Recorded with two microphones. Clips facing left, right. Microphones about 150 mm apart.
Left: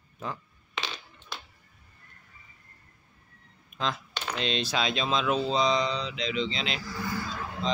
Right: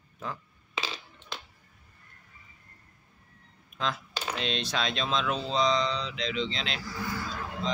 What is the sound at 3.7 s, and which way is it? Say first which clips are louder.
Computer keyboard: left 1 dB; centre (ahead or behind).